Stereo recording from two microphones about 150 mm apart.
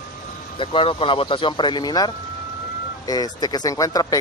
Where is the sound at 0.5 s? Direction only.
35° left (ahead or behind).